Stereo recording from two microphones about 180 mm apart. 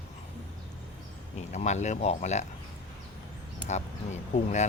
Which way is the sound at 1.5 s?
40° left (ahead or behind).